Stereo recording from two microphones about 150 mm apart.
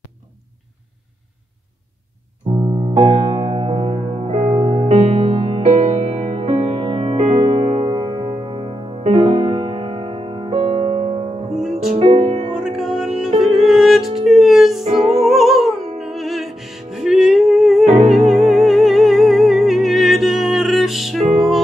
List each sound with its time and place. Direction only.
2.9 s music: 40° right (ahead or behind)
12.5 s music: 5° right (ahead or behind)
17.8 s music: 50° right (ahead or behind)
18.5 s music: centre (ahead or behind)